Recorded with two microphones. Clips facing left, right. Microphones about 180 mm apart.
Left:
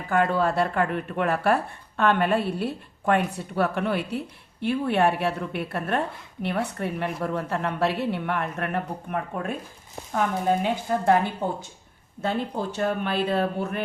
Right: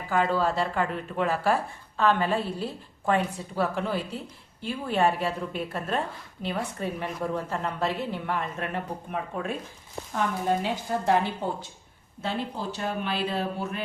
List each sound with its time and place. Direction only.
0.1 s a woman's voice: 55° left (ahead or behind)
10.6 s speech: 55° left (ahead or behind)